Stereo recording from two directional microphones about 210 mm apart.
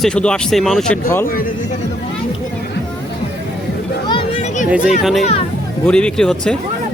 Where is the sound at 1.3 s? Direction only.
40° left (ahead or behind).